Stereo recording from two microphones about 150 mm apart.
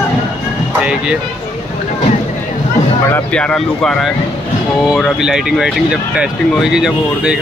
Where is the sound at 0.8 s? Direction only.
5° right (ahead or behind).